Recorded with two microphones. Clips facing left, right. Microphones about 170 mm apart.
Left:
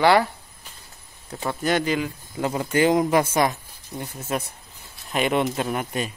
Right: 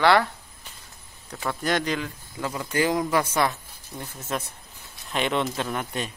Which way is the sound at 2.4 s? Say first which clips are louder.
Left 5 dB; 25° left (ahead or behind).